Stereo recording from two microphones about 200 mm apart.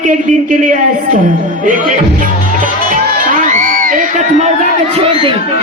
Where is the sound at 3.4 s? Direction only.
40° right (ahead or behind).